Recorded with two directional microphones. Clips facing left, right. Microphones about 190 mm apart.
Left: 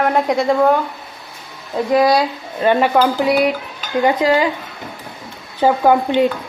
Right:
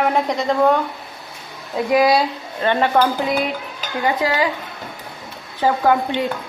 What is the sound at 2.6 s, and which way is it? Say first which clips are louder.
Speech: left 3 dB; 10° left (ahead or behind).